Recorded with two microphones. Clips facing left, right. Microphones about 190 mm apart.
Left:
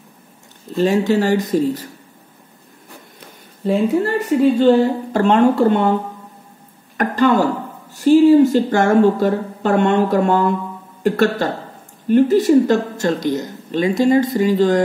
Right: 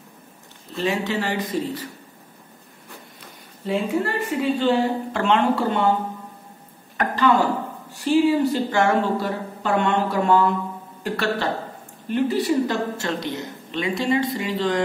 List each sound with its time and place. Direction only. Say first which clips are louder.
0.7 s a woman's voice: left 8 dB; 45° left (ahead or behind)
3.6 s a woman's voice: left 6 dB; 40° left (ahead or behind)
7.0 s a woman's voice: left 4 dB; 45° left (ahead or behind)